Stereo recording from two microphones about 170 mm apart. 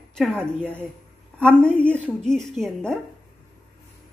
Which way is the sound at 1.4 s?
5° left (ahead or behind).